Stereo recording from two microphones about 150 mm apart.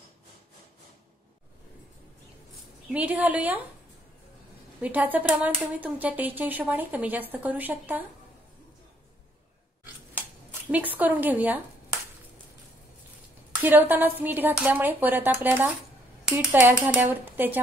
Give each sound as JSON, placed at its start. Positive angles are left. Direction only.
{"t": 2.9, "sound": "speech", "side_deg": -10}
{"t": 4.8, "sound": "speech", "side_deg": -10}
{"t": 10.7, "sound": "speech", "side_deg": -10}
{"t": 13.6, "sound": "speech", "side_deg": -10}